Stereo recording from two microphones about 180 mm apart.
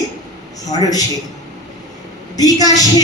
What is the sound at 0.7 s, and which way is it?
Music, 20° left (ahead or behind).